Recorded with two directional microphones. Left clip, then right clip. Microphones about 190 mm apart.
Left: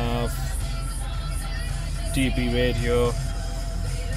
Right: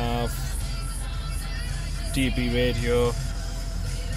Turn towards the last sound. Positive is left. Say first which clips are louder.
# left 1 dB
turn(degrees=-5)  # may be behind; listen again after turning